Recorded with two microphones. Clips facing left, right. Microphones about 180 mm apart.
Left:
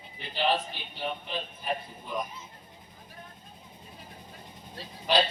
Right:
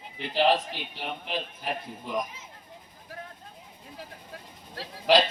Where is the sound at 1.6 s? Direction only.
90° right.